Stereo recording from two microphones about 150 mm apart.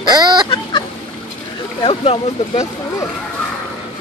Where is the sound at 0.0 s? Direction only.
30° right (ahead or behind).